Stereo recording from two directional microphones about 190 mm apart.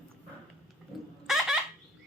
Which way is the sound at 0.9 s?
Centre (ahead or behind).